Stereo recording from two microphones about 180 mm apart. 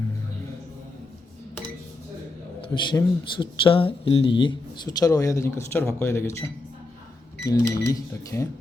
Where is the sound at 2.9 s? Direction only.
25° left (ahead or behind).